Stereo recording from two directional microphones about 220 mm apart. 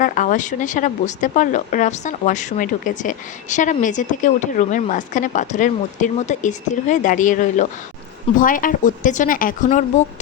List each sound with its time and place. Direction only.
0.0 s a woman's voice: 35° left (ahead or behind)